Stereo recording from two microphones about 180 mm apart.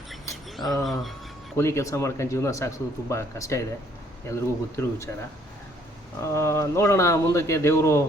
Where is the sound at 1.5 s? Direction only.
15° left (ahead or behind).